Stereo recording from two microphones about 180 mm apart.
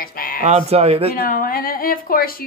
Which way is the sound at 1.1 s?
50° left (ahead or behind).